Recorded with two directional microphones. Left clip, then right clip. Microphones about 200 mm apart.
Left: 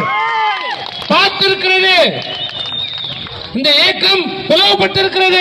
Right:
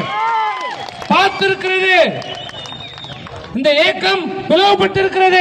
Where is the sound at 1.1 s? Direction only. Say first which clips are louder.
Left 2 dB; 50° left (ahead or behind).